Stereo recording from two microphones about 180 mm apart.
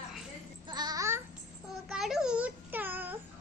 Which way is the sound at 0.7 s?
20° right (ahead or behind).